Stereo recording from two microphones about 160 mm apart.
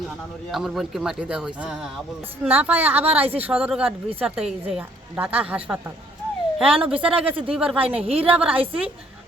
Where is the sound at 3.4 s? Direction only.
5° right (ahead or behind).